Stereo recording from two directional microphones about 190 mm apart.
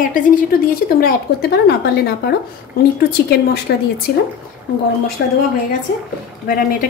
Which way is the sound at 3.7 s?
55° left (ahead or behind).